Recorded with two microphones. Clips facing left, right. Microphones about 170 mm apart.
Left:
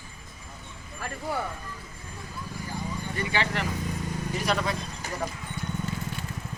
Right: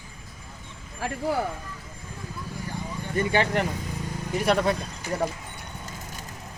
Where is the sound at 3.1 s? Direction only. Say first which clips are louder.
Right 7 dB; 50° right (ahead or behind).